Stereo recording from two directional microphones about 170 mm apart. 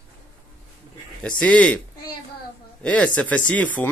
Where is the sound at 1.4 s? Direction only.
5° left (ahead or behind).